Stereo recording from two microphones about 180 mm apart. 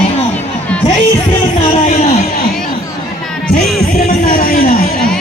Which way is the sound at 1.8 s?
40° left (ahead or behind).